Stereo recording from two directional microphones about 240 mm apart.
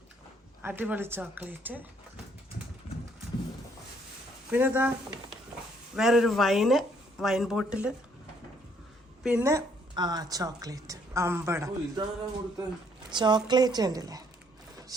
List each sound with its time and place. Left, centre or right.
0.6 s a woman's voice: centre
4.5 s a woman's voice: centre
6.0 s speech: centre
9.2 s a woman's voice: centre
13.1 s a woman's voice: centre